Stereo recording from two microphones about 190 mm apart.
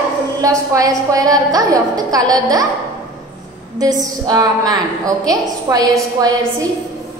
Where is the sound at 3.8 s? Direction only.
20° right (ahead or behind).